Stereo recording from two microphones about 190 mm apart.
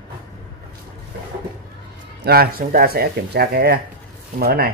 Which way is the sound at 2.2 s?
55° right (ahead or behind).